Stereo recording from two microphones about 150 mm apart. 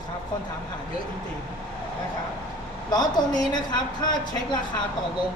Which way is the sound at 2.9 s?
25° left (ahead or behind).